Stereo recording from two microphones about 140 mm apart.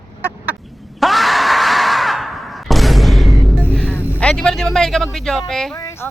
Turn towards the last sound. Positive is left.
turn(degrees=20)  # may be behind; listen again after turning